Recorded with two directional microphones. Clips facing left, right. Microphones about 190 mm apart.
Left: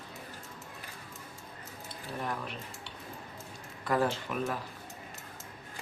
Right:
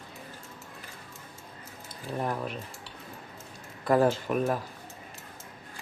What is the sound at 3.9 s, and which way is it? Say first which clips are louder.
Speech: right 6 dB; 40° right (ahead or behind).